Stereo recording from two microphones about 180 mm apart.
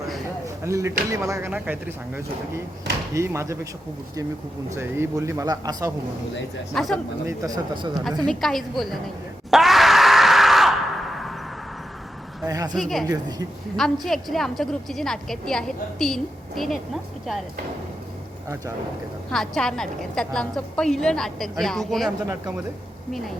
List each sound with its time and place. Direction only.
0.4 s a sound: 15° right (ahead or behind)
1.1 s speech: 15° right (ahead or behind)
4.7 s speech: 15° right (ahead or behind)
6.7 s a woman's voice: centre (ahead or behind)
7.3 s a man's voice: 20° right (ahead or behind)
8.3 s a woman's voice: centre (ahead or behind)
9.5 s screaming: centre (ahead or behind)
12.5 s a man's voice: 20° right (ahead or behind)
12.7 s a woman's voice: centre (ahead or behind)
18.4 s speech: 15° right (ahead or behind)
19.3 s a woman's voice: 5° left (ahead or behind)